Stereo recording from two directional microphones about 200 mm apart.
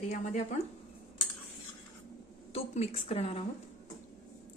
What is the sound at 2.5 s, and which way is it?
Speech, 30° left (ahead or behind).